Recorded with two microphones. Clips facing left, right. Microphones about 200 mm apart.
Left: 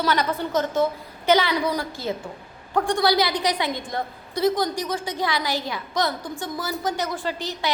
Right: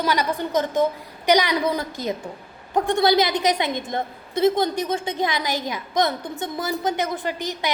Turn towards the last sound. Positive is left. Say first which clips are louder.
# right 1 dB
turn(degrees=-15)  # may be behind; listen again after turning